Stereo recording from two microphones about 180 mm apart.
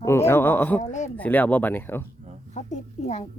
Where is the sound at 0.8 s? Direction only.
40° left (ahead or behind).